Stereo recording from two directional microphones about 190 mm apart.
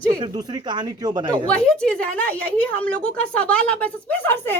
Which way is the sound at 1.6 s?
5° left (ahead or behind).